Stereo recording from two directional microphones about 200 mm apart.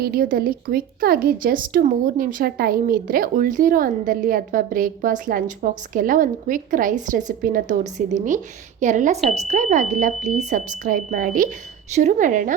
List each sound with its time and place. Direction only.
0.0 s a woman's voice: 50° right (ahead or behind)